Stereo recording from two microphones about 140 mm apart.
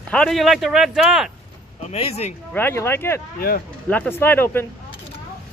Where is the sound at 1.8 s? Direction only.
50° left (ahead or behind).